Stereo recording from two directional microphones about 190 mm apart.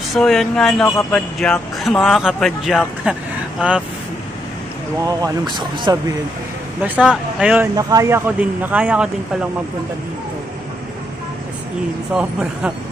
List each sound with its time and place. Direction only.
0.1 s speech: centre (ahead or behind)
5.0 s speech: 20° right (ahead or behind)
6.8 s speech: 5° right (ahead or behind)
12.1 s speech: 5° right (ahead or behind)